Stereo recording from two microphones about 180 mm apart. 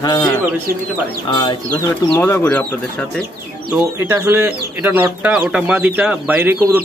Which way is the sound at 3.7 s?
15° right (ahead or behind).